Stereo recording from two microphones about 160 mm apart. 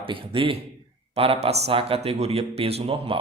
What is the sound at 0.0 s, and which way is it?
Speech, 30° right (ahead or behind).